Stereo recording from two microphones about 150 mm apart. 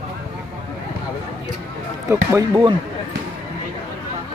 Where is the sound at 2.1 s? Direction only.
20° right (ahead or behind).